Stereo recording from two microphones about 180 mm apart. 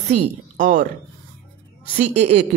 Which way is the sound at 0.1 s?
40° right (ahead or behind).